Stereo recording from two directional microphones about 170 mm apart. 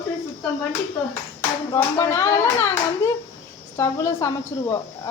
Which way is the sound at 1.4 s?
20° left (ahead or behind).